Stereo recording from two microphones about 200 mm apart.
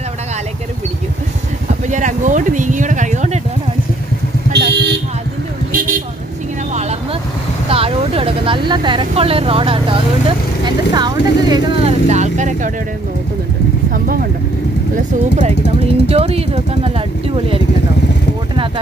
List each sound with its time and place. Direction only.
1.7 s a sound: 40° right (ahead or behind)
4.5 s vehicle: 55° right (ahead or behind)
5.7 s vehicle: 45° right (ahead or behind)
7.7 s speech: 30° right (ahead or behind)
14.0 s speech: 45° right (ahead or behind)
16.1 s speech: 30° right (ahead or behind)